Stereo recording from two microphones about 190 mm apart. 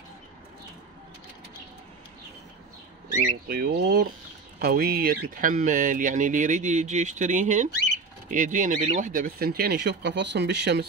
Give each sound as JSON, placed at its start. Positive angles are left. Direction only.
{"t": 3.4, "sound": "speech", "side_deg": -55}